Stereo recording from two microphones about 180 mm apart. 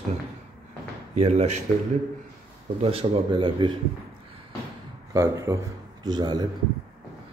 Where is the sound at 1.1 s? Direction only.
35° right (ahead or behind).